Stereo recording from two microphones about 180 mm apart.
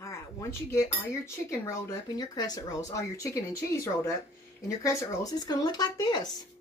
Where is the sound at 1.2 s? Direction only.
15° left (ahead or behind).